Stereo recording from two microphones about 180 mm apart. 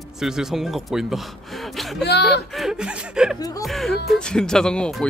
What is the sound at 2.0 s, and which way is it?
Speech, 70° left (ahead or behind).